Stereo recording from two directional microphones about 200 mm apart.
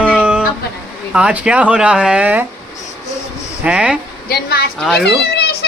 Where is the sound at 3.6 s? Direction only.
5° right (ahead or behind).